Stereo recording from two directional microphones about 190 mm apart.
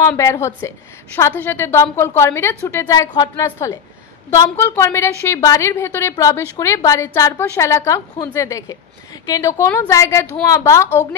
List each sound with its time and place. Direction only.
0.2 s a woman's voice: 15° left (ahead or behind)